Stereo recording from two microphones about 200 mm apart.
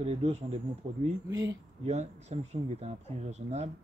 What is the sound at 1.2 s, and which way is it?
Speech, 20° right (ahead or behind).